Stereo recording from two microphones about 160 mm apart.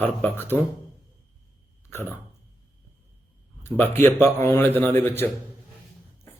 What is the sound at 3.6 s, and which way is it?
A man's voice, 15° left (ahead or behind).